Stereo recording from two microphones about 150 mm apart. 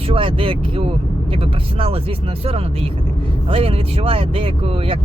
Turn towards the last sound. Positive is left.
turn(degrees=-40)  # may be behind; listen again after turning